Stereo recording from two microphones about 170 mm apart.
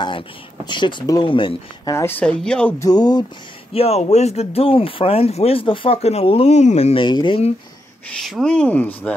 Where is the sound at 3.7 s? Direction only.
35° left (ahead or behind).